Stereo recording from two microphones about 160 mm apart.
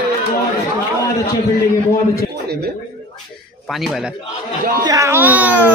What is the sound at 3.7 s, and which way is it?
Speech, centre (ahead or behind).